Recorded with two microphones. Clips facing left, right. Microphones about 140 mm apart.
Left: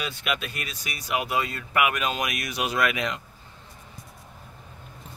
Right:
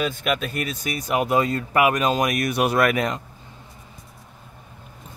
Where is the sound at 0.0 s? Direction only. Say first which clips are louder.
Right 6 dB; 45° right (ahead or behind).